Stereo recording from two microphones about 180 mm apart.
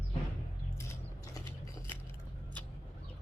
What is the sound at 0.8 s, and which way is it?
Mechanisms, 20° left (ahead or behind).